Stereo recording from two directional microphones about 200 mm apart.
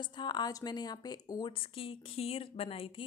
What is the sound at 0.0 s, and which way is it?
A woman's voice, 20° left (ahead or behind).